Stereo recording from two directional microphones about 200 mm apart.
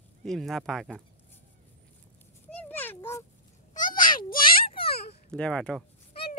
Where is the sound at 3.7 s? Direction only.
40° left (ahead or behind).